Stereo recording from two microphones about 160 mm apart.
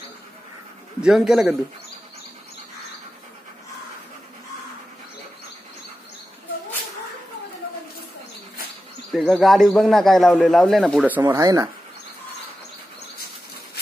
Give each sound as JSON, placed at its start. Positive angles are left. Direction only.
{"t": 1.0, "sound": "speech", "side_deg": 0}
{"t": 9.1, "sound": "speech", "side_deg": 0}
{"t": 11.1, "sound": "speech", "side_deg": -15}